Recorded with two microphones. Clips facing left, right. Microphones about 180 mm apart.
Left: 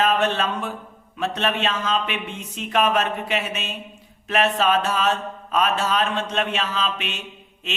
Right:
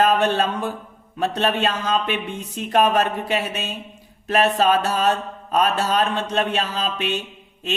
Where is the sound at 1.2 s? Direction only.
40° right (ahead or behind).